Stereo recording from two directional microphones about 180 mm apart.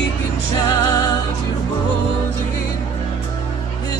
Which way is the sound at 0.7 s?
20° left (ahead or behind).